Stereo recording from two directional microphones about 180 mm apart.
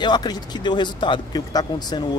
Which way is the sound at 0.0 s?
25° left (ahead or behind).